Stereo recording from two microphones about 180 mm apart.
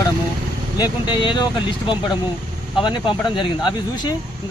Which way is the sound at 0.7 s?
25° left (ahead or behind).